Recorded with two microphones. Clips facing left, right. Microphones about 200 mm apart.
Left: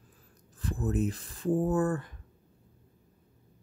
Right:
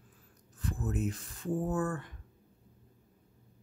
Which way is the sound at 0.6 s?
35° left (ahead or behind).